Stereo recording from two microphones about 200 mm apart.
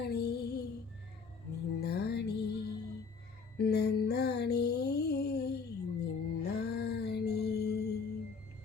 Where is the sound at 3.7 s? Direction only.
55° left (ahead or behind).